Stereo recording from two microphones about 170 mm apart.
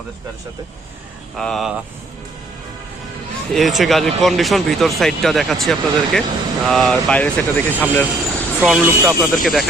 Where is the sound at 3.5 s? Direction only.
Centre (ahead or behind).